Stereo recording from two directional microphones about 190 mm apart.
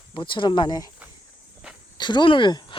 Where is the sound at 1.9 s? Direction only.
25° left (ahead or behind).